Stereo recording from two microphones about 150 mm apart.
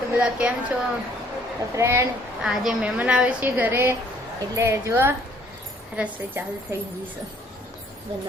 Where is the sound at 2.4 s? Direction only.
5° right (ahead or behind).